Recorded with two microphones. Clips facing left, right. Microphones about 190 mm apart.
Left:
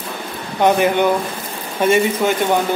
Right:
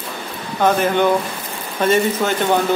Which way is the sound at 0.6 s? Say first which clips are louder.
Left 1 dB; 15° left (ahead or behind).